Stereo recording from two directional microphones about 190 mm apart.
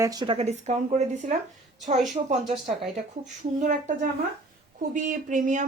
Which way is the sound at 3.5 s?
40° right (ahead or behind).